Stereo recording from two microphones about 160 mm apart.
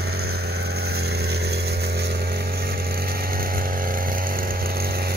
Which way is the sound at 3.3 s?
65° right (ahead or behind).